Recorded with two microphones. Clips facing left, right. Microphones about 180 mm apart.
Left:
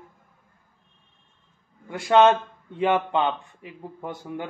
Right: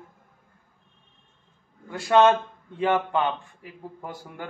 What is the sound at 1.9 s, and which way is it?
A man's voice, 20° left (ahead or behind).